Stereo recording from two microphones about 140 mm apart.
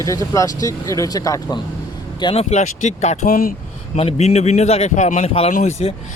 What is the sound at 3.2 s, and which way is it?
Speech, 90° left.